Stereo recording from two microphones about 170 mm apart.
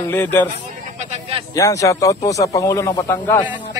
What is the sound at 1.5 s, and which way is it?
Speech, 20° left (ahead or behind).